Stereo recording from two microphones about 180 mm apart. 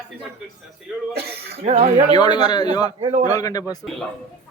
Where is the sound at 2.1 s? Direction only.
25° left (ahead or behind).